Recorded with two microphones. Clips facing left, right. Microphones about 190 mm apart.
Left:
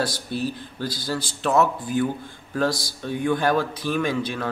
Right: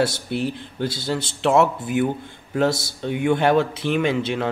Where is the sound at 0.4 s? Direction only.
25° right (ahead or behind).